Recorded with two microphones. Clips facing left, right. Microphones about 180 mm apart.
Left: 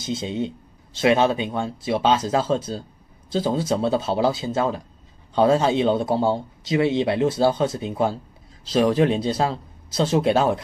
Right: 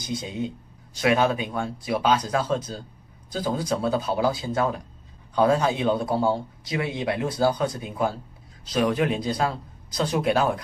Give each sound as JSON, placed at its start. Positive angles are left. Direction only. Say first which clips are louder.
{"t": 0.0, "sound": "a man's voice", "louder": "left 4 dB", "side_deg": 25}